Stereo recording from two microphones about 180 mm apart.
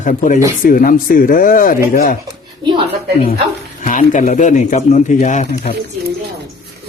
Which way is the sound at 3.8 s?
45° left (ahead or behind).